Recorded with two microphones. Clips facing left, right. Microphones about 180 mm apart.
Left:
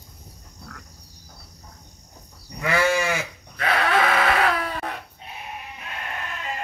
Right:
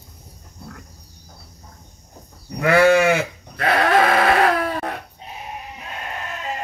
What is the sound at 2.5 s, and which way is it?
Goat, 55° right (ahead or behind).